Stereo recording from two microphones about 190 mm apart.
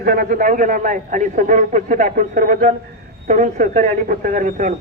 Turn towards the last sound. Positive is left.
turn(degrees=-45)  # may be behind; listen again after turning